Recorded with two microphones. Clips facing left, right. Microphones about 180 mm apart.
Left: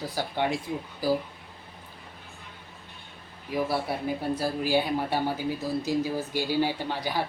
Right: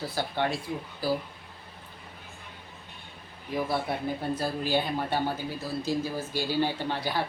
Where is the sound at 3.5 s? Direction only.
10° left (ahead or behind).